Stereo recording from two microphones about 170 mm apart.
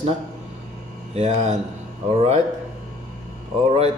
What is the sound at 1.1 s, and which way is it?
Mantra, 40° right (ahead or behind).